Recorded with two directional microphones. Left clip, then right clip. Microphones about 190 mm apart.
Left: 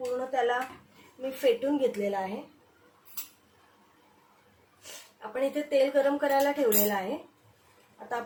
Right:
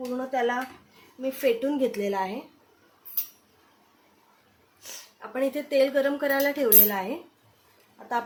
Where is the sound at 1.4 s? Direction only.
45° right (ahead or behind).